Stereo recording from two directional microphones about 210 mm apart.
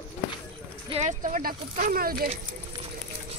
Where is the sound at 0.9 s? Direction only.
35° right (ahead or behind).